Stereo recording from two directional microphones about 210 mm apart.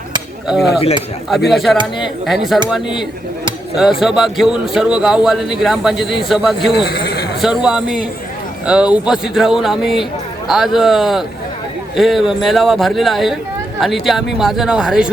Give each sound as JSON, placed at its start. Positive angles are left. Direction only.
{"t": 0.4, "sound": "a man's voice", "side_deg": 0}
{"t": 3.8, "sound": "a man's voice", "side_deg": 0}
{"t": 6.8, "sound": "speech", "side_deg": 50}
{"t": 7.4, "sound": "a man's voice", "side_deg": -5}